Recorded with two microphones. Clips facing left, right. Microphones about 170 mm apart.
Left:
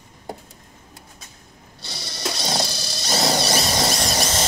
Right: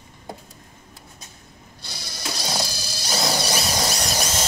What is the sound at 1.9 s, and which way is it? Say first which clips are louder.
Mechanisms: left 4 dB; 10° right (ahead or behind).